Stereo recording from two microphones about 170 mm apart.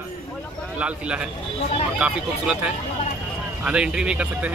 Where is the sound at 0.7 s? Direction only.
5° right (ahead or behind).